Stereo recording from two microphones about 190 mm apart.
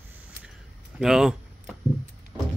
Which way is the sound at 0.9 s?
Centre (ahead or behind).